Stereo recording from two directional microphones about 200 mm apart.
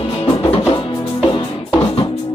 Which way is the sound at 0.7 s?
25° left (ahead or behind).